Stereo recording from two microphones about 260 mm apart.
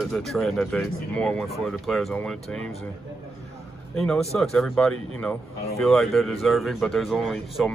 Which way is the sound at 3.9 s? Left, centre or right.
Centre.